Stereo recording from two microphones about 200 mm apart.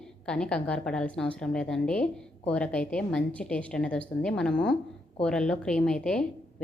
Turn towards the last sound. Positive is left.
turn(degrees=5)  # may be behind; listen again after turning